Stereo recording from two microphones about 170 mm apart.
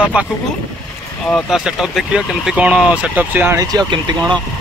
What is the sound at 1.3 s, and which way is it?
Speech, 5° right (ahead or behind).